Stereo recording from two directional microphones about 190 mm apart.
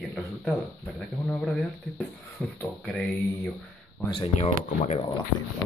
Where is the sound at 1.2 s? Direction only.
15° left (ahead or behind).